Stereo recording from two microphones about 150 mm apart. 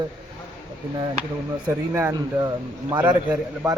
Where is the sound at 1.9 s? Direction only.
20° right (ahead or behind).